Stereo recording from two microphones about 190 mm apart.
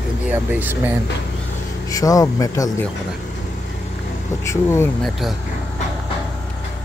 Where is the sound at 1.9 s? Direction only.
20° left (ahead or behind).